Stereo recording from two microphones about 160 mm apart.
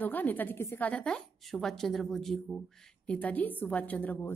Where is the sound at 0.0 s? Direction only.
10° left (ahead or behind).